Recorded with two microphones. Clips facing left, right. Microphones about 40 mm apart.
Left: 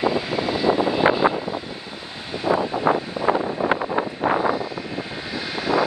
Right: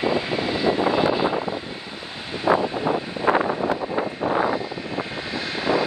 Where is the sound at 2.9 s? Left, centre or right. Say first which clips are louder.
Left 5 dB; left.